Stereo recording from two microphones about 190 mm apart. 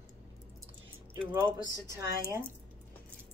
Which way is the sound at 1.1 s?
15° right (ahead or behind).